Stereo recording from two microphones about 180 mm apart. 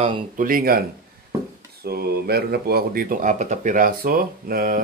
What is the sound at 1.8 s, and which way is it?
Speech, 60° right (ahead or behind).